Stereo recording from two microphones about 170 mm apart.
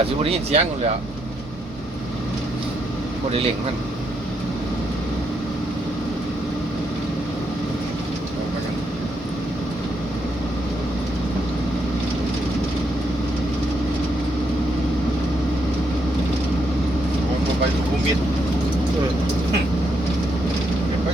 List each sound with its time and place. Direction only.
0.2 s speech: 35° right (ahead or behind)